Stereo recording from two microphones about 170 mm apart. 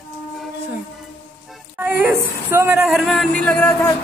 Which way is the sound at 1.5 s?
10° right (ahead or behind).